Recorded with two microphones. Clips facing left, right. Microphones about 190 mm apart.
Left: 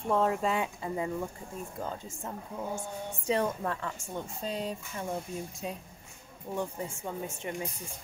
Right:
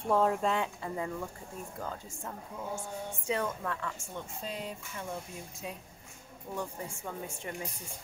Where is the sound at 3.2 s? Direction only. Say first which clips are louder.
Left 4 dB; 35° left (ahead or behind).